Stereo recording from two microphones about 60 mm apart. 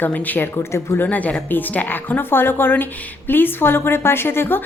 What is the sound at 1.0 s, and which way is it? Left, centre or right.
A woman's voice, left.